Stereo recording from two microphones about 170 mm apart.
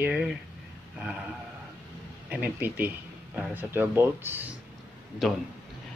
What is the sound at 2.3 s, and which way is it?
Speech, 10° right (ahead or behind).